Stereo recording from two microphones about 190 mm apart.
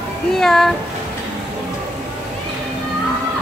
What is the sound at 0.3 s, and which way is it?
Speech, centre (ahead or behind).